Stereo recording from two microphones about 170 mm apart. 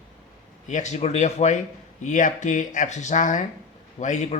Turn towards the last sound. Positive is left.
turn(degrees=45)  # may be behind; listen again after turning